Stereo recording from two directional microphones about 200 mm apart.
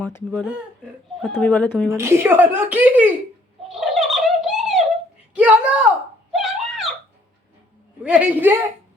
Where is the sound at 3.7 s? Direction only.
Centre (ahead or behind).